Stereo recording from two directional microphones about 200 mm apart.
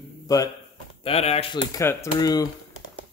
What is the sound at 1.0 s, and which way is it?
Speech, 30° left (ahead or behind).